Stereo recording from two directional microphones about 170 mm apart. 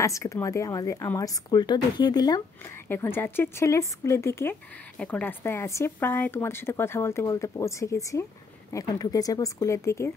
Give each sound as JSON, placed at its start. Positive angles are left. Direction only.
{"t": 0.0, "sound": "a woman's voice", "side_deg": 15}
{"t": 2.9, "sound": "a woman's voice", "side_deg": 15}